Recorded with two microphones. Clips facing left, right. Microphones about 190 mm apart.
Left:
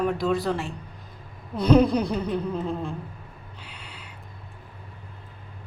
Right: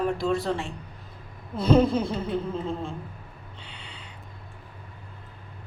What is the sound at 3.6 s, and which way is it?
Gasp, 5° left (ahead or behind).